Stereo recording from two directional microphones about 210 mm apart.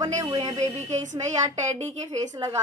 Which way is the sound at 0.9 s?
35° right (ahead or behind).